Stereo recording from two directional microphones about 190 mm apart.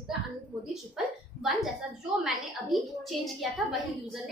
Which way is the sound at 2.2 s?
Centre (ahead or behind).